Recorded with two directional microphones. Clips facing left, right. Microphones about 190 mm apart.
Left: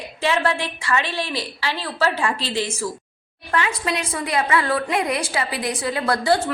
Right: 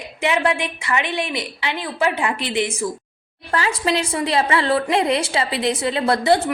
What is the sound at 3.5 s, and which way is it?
A woman's voice, 35° right (ahead or behind).